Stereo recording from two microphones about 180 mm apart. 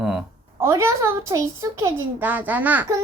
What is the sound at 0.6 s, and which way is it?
A child's voice, 15° right (ahead or behind).